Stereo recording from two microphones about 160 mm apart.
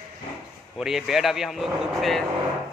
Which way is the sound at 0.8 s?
Centre (ahead or behind).